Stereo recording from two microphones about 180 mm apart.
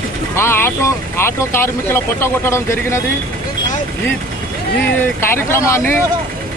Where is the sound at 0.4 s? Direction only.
15° left (ahead or behind).